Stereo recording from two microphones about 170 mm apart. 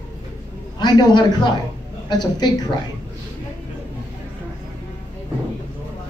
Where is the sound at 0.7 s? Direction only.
25° left (ahead or behind).